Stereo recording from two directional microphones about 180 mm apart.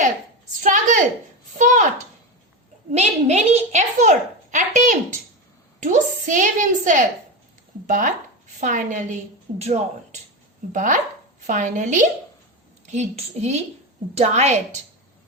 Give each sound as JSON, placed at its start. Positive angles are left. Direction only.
{"t": 0.6, "sound": "a woman's voice", "side_deg": -45}
{"t": 2.9, "sound": "a child's voice", "side_deg": -40}